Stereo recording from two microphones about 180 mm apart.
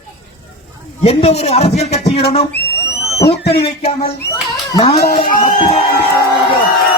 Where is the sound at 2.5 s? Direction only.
65° left (ahead or behind).